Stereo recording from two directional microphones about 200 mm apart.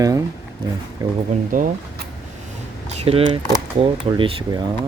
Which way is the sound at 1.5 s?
40° right (ahead or behind).